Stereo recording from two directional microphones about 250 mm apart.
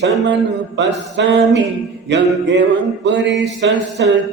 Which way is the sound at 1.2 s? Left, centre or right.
Right.